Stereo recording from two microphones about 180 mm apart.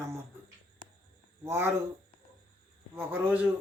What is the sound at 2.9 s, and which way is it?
Speech, 10° right (ahead or behind).